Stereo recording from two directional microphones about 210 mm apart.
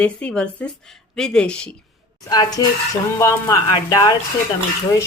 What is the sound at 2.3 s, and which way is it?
Speech, 20° left (ahead or behind).